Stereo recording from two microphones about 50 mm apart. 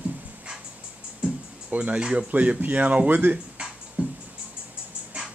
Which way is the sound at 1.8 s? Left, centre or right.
Right.